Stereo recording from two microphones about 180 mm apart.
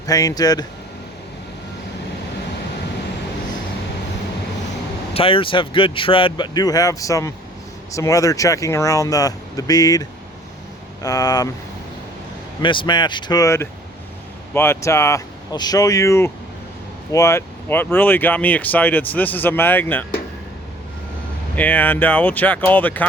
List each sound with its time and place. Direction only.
0.0 s speech: 20° left (ahead or behind)
5.1 s speech: 30° left (ahead or behind)
12.6 s speech: 25° left (ahead or behind); by 20.1 s 10° left (ahead or behind)
21.5 s speech: 10° left (ahead or behind)